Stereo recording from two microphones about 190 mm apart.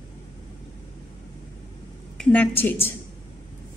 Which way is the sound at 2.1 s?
5° left (ahead or behind).